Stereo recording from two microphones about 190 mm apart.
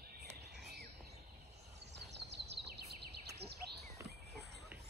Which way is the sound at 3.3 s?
60° right (ahead or behind).